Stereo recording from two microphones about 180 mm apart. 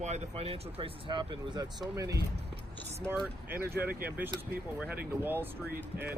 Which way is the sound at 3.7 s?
10° right (ahead or behind).